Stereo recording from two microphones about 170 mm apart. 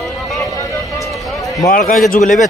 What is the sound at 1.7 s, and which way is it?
Speech, 60° left (ahead or behind).